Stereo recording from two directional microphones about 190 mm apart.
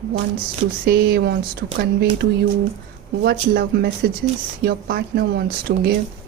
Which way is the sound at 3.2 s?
60° right (ahead or behind).